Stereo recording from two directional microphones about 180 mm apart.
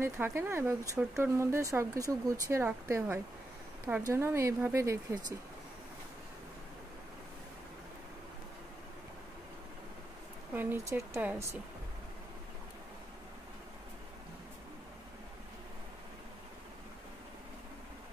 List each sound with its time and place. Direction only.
0.0 s speech: 15° right (ahead or behind)
10.5 s speech: 10° right (ahead or behind)